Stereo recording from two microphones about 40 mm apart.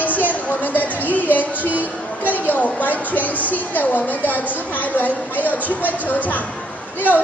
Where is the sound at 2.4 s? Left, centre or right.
Left.